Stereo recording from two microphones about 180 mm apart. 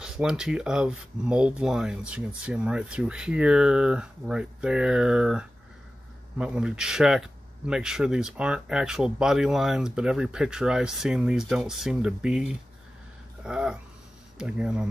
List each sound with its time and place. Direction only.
0.0 s speech: 5° right (ahead or behind)